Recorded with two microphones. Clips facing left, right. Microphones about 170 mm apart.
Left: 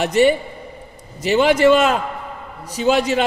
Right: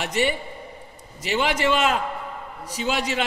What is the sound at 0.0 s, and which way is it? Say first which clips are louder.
A man's voice: left 9 dB; 40° left (ahead or behind).